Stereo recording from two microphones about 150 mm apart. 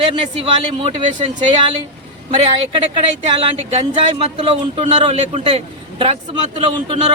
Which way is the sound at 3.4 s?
35° right (ahead or behind).